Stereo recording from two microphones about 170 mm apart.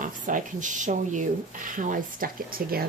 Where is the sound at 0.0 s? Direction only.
50° right (ahead or behind).